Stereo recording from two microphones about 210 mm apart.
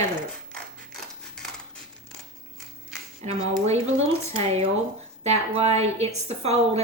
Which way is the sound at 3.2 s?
30° right (ahead or behind).